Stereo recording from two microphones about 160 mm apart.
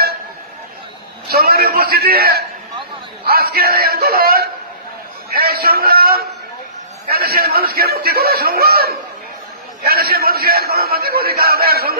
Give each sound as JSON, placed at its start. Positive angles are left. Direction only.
{"t": 1.3, "sound": "a man's voice", "side_deg": -75}